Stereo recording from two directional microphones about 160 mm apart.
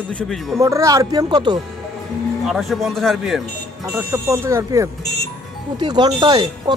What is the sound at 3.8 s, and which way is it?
Speech, 20° right (ahead or behind).